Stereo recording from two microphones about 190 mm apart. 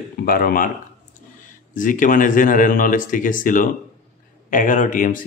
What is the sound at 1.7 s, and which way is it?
Speech, 45° left (ahead or behind).